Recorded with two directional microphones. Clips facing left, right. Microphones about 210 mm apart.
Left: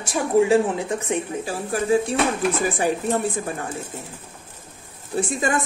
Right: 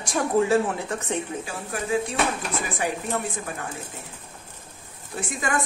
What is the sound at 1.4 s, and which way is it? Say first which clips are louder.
Speech: left 6 dB; 35° left (ahead or behind).